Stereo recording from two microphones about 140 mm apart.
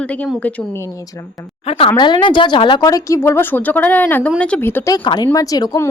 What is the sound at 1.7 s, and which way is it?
A woman's voice, 40° left (ahead or behind).